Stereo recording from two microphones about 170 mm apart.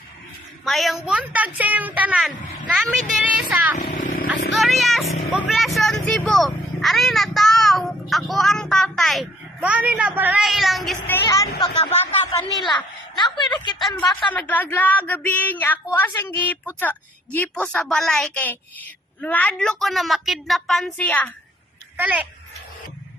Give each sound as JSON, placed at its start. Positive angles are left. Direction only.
{"t": 0.6, "sound": "a woman's voice", "side_deg": 0}
{"t": 3.8, "sound": "vehicle", "side_deg": 50}
{"t": 4.5, "sound": "vehicle", "side_deg": 0}
{"t": 5.5, "sound": "a woman's voice", "side_deg": 0}
{"t": 11.0, "sound": "a woman's voice", "side_deg": 15}
{"t": 14.3, "sound": "a woman's voice", "side_deg": 10}
{"t": 21.9, "sound": "a woman's voice", "side_deg": -10}